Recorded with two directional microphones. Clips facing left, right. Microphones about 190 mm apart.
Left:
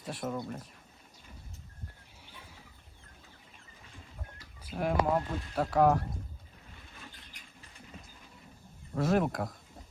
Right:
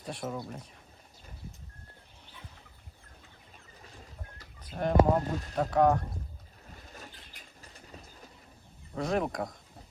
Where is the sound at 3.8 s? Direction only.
40° right (ahead or behind).